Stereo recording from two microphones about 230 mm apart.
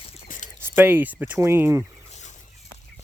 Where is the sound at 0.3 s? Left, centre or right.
Left.